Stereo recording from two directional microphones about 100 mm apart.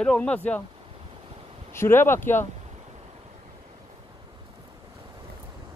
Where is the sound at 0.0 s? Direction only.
10° left (ahead or behind).